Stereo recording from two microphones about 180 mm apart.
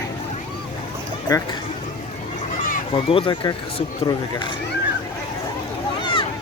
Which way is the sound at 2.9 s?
30° left (ahead or behind).